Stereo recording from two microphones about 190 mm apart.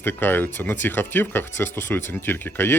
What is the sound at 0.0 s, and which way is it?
Speech, 10° left (ahead or behind).